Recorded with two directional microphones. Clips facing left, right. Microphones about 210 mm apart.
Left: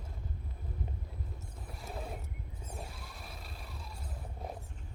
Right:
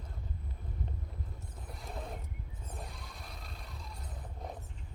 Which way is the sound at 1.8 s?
5° left (ahead or behind).